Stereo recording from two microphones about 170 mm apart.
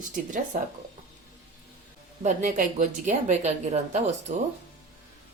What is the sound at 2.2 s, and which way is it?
Speech, 50° right (ahead or behind).